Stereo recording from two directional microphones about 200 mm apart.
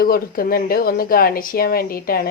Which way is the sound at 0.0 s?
50° left (ahead or behind).